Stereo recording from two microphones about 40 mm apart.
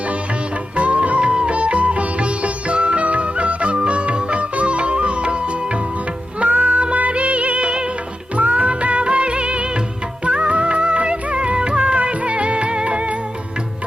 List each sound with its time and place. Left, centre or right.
0.8 s music: right
6.4 s music: right
10.2 s music of bollywood: right